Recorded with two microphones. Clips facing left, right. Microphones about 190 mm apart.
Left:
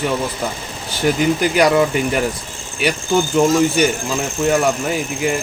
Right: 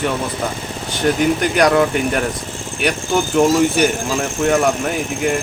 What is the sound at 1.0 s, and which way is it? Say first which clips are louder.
Speech: even; 5° left (ahead or behind).